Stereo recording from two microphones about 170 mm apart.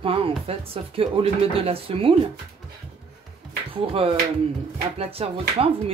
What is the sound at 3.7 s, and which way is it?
Speech, 35° right (ahead or behind).